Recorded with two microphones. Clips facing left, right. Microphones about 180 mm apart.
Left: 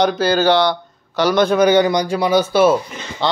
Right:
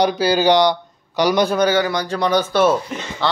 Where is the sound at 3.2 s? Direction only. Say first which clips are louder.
Left 2 dB; 15° left (ahead or behind).